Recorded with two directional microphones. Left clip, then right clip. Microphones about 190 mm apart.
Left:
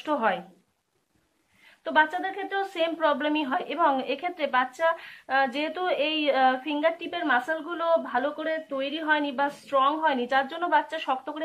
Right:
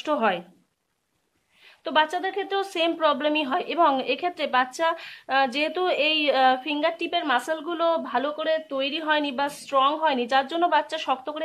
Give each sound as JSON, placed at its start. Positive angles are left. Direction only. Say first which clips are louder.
{"t": 0.0, "sound": "a woman's voice", "louder": "right 2 dB", "side_deg": -45}
{"t": 1.9, "sound": "a woman's voice", "louder": "right 1 dB", "side_deg": -45}